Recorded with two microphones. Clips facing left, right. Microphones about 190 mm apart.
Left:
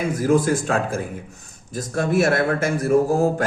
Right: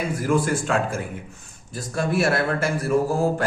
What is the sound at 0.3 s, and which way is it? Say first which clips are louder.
A man's voice: left 3 dB; 40° left (ahead or behind).